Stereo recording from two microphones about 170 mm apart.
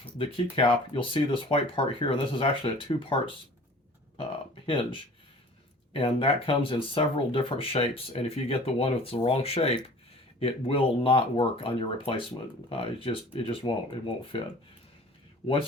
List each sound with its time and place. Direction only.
0.2 s speech: 35° left (ahead or behind)
15.4 s speech: 35° left (ahead or behind)